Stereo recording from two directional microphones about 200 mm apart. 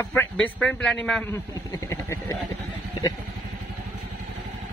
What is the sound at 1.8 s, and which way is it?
Speech, 15° left (ahead or behind).